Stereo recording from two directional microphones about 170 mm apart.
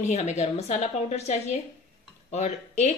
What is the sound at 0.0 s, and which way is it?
A woman's voice, 45° left (ahead or behind).